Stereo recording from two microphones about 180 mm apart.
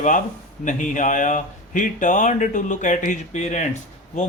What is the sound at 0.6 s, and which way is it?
Speech, 45° left (ahead or behind).